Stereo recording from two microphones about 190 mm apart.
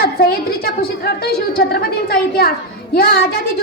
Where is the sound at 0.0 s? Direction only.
50° left (ahead or behind).